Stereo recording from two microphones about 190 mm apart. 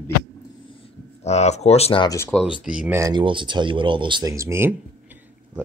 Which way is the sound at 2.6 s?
5° right (ahead or behind).